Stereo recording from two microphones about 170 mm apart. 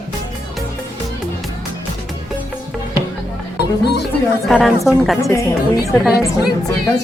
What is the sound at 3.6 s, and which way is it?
Speech, 75° left (ahead or behind).